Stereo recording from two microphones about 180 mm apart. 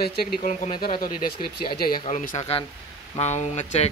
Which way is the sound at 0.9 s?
55° left (ahead or behind).